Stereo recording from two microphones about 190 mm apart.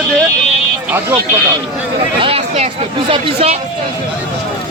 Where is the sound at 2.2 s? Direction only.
30° right (ahead or behind).